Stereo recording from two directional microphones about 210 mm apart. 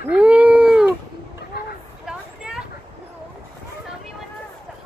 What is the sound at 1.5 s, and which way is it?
Vehicle, 50° left (ahead or behind).